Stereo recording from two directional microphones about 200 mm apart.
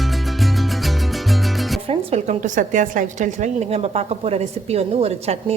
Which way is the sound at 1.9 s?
35° right (ahead or behind).